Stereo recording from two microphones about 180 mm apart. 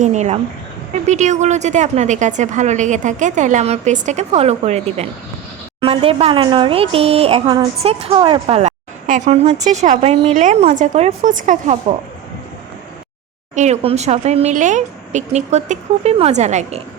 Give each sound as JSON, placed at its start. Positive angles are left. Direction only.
{"t": 0.0, "sound": "a woman's voice", "side_deg": -40}
{"t": 7.4, "sound": "a woman's voice", "side_deg": -20}
{"t": 7.8, "sound": "a woman's voice", "side_deg": -35}
{"t": 13.6, "sound": "a woman's voice", "side_deg": -40}